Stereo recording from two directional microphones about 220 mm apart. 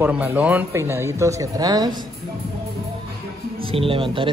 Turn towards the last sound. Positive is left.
turn(degrees=-25)  # may be behind; listen again after turning